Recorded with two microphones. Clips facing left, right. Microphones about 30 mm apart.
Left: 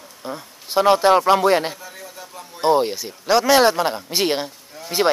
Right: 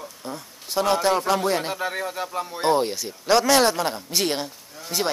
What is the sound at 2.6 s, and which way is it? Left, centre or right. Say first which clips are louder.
Speech: left 4 dB; centre.